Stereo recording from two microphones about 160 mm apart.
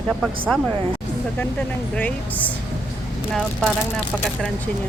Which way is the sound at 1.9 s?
10° left (ahead or behind).